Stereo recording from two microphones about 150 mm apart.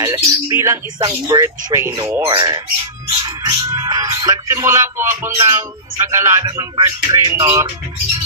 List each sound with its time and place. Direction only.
0.0 s speech: 20° right (ahead or behind)
2.2 s speech: 30° right (ahead or behind)